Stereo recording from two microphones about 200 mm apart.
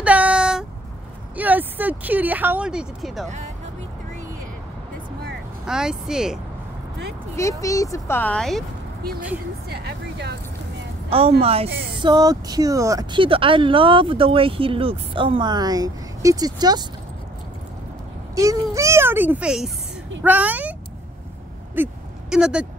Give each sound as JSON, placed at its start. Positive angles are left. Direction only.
{"t": 0.0, "sound": "a sound", "side_deg": -5}
{"t": 1.3, "sound": "speech", "side_deg": -10}
{"t": 5.7, "sound": "speech", "side_deg": -5}
{"t": 7.3, "sound": "speech", "side_deg": 15}
{"t": 9.7, "sound": "speech", "side_deg": -55}
{"t": 11.1, "sound": "a woman's voice", "side_deg": -30}
{"t": 18.3, "sound": "speech", "side_deg": -15}
{"t": 21.8, "sound": "a sound", "side_deg": -5}